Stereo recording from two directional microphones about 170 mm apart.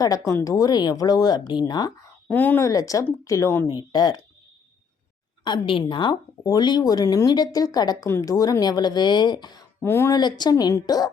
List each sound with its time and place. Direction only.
0.0 s speech: 20° left (ahead or behind)
2.2 s speech: 10° left (ahead or behind)
5.5 s speech: 30° left (ahead or behind)
9.8 s speech: 15° left (ahead or behind)